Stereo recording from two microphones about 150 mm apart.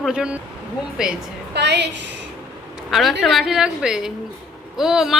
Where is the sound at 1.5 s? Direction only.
90° right.